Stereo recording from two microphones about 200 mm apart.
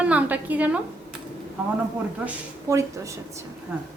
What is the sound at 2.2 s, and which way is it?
Speech, 15° right (ahead or behind).